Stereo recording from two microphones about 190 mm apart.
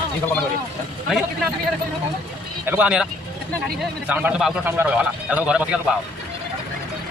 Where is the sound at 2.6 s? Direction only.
5° right (ahead or behind).